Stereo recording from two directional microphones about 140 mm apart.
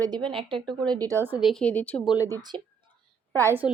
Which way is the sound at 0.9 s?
25° right (ahead or behind).